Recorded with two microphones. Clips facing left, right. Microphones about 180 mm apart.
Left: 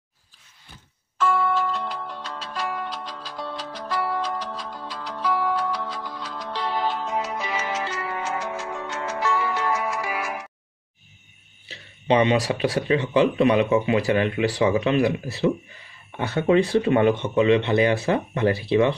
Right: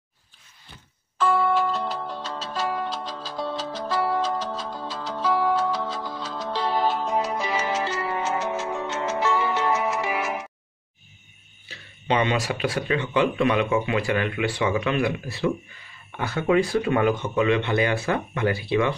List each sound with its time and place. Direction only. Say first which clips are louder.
1.1 s music: right 1 dB; 30° right (ahead or behind)
11.7 s speech: left 4 dB; 30° left (ahead or behind)